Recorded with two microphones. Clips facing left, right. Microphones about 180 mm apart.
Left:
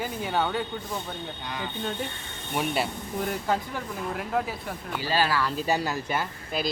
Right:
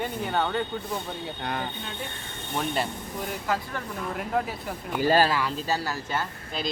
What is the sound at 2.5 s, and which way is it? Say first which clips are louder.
Speech: left 1 dB; 10° left (ahead or behind).